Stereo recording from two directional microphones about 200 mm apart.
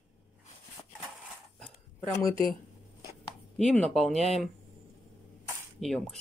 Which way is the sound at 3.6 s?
5° left (ahead or behind).